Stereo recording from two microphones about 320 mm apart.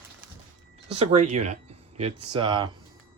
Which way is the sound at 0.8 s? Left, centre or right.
Centre.